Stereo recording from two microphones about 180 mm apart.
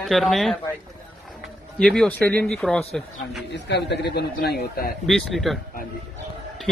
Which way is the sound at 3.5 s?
70° left (ahead or behind).